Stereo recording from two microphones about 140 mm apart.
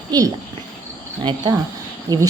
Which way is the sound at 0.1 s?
30° right (ahead or behind).